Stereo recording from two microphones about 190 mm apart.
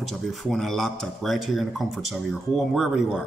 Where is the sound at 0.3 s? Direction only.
Centre (ahead or behind).